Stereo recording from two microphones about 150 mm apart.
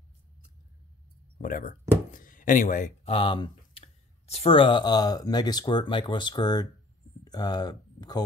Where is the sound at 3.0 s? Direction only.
35° left (ahead or behind).